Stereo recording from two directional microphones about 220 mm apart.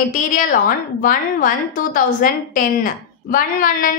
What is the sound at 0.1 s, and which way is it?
A woman's voice, 40° left (ahead or behind).